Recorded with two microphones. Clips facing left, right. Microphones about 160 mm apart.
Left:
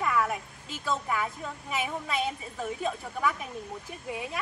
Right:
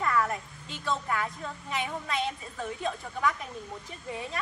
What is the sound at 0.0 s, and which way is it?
A woman's voice, 10° left (ahead or behind).